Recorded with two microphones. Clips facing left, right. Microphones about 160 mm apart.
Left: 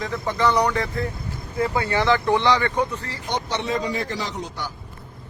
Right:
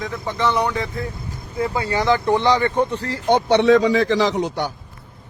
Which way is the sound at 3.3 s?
60° right (ahead or behind).